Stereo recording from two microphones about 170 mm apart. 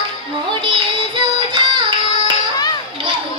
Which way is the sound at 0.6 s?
30° right (ahead or behind).